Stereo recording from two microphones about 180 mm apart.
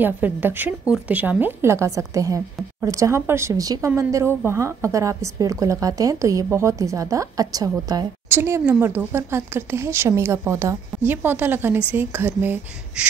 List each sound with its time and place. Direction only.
0.0 s a woman's voice: 10° right (ahead or behind)